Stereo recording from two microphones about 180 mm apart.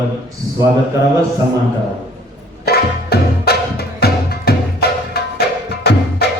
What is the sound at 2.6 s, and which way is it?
Music, 60° left (ahead or behind).